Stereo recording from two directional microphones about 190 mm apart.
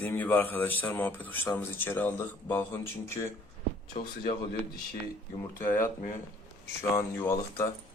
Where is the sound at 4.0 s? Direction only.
45° left (ahead or behind).